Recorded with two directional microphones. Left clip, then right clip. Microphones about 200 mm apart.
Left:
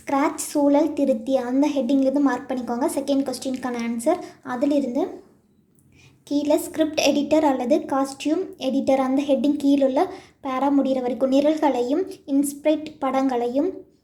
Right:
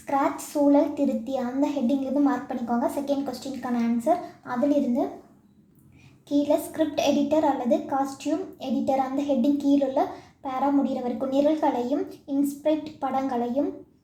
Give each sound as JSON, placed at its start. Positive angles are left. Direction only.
{"t": 0.0, "sound": "a sound", "side_deg": 30}
{"t": 0.7, "sound": "a woman's voice", "side_deg": 30}
{"t": 6.2, "sound": "a woman's voice", "side_deg": 25}